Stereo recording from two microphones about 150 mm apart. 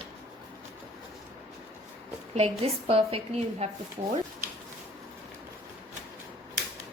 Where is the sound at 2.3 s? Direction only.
40° right (ahead or behind).